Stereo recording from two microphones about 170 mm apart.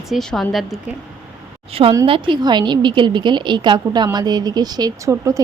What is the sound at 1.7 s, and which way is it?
A woman's voice, 30° right (ahead or behind).